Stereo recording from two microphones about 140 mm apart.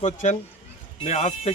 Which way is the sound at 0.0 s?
60° left (ahead or behind).